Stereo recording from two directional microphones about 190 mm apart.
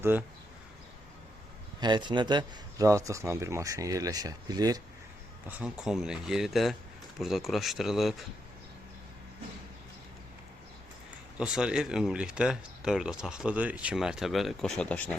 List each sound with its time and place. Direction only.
0.0 s a man's voice: 10° right (ahead or behind)
1.8 s a man's voice: 25° right (ahead or behind)
5.5 s speech: 5° right (ahead or behind)
11.3 s speech: 5° right (ahead or behind)